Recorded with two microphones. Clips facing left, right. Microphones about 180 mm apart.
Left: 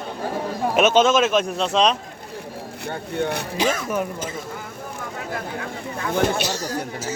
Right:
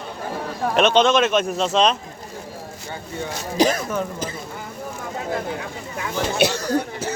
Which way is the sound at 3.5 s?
35° right (ahead or behind).